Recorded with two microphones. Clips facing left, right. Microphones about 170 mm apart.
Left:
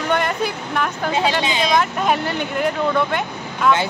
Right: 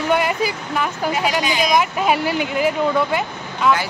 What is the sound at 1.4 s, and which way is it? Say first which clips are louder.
Speech: right 1 dB; 25° left (ahead or behind).